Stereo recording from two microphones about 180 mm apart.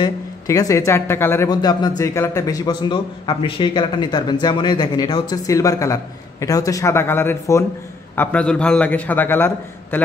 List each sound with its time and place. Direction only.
0.0 s a man's voice: 20° left (ahead or behind)